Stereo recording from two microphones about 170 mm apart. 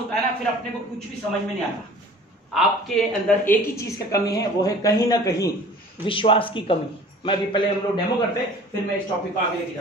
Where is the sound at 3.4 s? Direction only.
20° left (ahead or behind).